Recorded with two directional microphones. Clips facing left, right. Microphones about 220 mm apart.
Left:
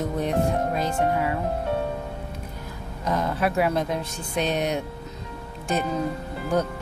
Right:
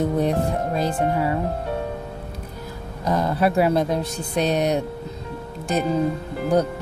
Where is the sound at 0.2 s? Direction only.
35° right (ahead or behind).